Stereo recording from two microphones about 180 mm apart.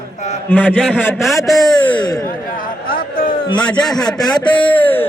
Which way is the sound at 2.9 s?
55° left (ahead or behind).